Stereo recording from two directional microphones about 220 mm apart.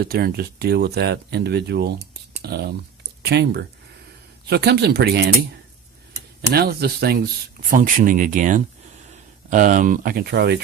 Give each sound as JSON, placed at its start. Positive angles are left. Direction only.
{"t": 0.0, "sound": "speech", "side_deg": -45}
{"t": 6.5, "sound": "speech", "side_deg": -45}